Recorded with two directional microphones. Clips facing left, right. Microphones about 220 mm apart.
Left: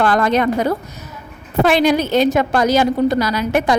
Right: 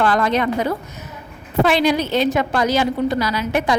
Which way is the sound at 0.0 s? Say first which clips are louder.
Left 2 dB; 45° left (ahead or behind).